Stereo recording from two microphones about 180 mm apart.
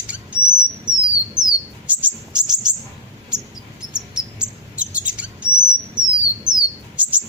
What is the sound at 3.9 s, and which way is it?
Bird, 5° right (ahead or behind).